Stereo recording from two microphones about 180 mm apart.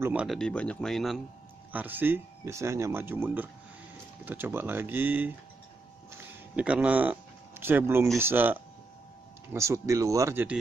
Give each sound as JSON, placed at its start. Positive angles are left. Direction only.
{"t": 0.0, "sound": "speech", "side_deg": -5}
{"t": 6.1, "sound": "a sound", "side_deg": -5}
{"t": 8.2, "sound": "speech", "side_deg": -10}